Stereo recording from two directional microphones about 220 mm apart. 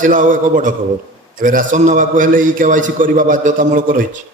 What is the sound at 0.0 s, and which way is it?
A man's voice, 35° right (ahead or behind).